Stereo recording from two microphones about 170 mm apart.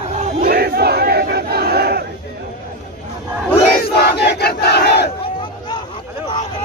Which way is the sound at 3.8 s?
70° left (ahead or behind).